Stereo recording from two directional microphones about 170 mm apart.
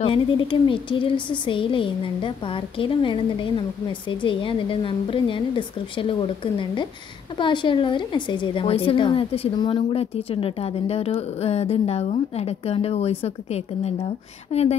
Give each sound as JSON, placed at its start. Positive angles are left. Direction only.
{"t": 0.0, "sound": "a woman's voice", "side_deg": 30}